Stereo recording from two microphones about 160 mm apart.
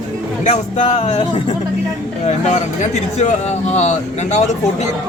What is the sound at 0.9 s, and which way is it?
Speech, 35° left (ahead or behind).